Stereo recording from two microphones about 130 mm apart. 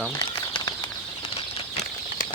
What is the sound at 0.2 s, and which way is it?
Bird flight, 30° left (ahead or behind).